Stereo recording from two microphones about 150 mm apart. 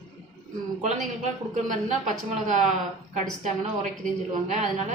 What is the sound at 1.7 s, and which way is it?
Speech, 55° right (ahead or behind).